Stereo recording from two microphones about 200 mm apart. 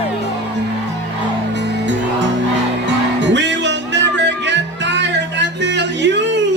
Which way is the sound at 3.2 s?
65° right (ahead or behind).